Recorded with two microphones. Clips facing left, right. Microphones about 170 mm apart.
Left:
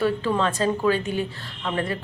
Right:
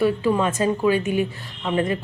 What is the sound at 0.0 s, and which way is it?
Speech, 15° right (ahead or behind).